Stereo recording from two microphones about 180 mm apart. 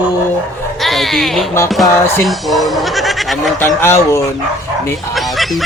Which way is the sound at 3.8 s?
15° left (ahead or behind).